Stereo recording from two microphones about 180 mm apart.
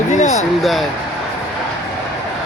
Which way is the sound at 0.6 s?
Centre (ahead or behind).